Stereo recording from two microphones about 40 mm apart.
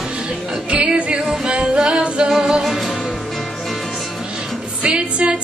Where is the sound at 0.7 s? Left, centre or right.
Centre.